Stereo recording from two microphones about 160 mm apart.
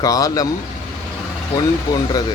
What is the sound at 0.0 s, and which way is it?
Speech, 20° left (ahead or behind).